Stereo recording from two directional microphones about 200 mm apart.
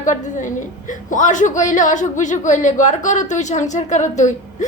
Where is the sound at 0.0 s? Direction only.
40° left (ahead or behind).